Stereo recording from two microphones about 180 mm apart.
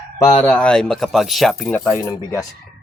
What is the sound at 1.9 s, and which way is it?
Speech, 15° left (ahead or behind).